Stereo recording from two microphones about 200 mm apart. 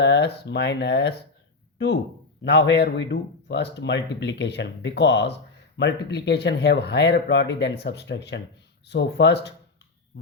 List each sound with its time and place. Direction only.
0.0 s speech: 60° left (ahead or behind)
2.4 s speech: 60° left (ahead or behind)